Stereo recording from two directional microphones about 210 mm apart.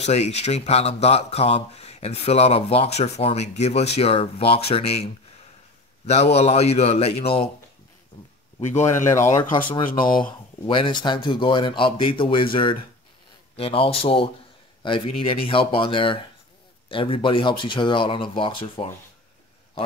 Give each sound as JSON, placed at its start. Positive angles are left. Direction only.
{"t": 0.0, "sound": "speech", "side_deg": 30}
{"t": 8.5, "sound": "a man's voice", "side_deg": 35}
{"t": 9.8, "sound": "speech", "side_deg": 40}
{"t": 10.6, "sound": "speech", "side_deg": 25}
{"t": 13.6, "sound": "speech", "side_deg": 25}